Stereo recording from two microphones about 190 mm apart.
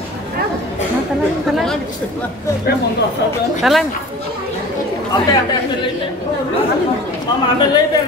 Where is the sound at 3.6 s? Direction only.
Centre (ahead or behind).